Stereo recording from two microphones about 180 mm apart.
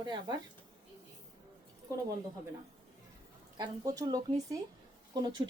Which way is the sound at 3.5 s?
20° right (ahead or behind).